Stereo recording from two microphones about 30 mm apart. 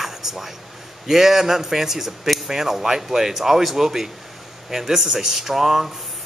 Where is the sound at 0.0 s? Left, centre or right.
Centre.